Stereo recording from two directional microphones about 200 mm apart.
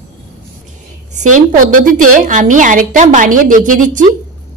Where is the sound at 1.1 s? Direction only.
40° right (ahead or behind).